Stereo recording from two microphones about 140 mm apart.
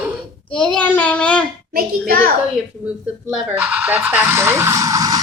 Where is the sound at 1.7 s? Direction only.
90° right.